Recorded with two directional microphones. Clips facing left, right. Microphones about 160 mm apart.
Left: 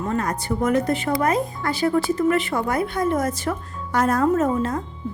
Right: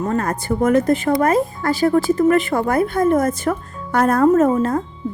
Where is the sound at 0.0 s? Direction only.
45° right (ahead or behind).